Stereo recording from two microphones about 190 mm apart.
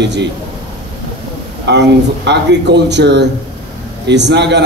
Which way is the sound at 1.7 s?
65° right (ahead or behind).